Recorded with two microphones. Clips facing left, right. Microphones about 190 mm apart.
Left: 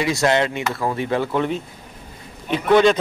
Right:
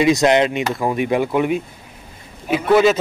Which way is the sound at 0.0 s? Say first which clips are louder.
Right 5 dB; 20° right (ahead or behind).